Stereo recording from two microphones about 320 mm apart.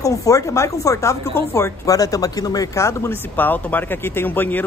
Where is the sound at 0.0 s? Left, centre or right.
Centre.